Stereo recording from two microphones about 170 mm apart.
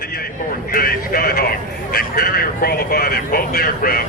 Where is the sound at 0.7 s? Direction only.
60° left (ahead or behind).